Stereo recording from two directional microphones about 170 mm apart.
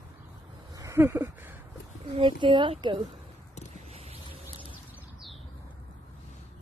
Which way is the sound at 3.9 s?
40° right (ahead or behind).